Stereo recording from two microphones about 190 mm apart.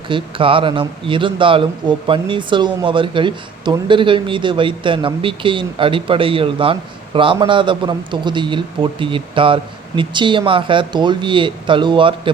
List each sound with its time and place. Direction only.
0.1 s a man's voice: 25° right (ahead or behind)